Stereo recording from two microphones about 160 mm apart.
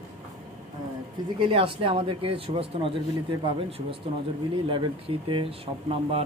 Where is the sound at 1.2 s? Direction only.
25° right (ahead or behind).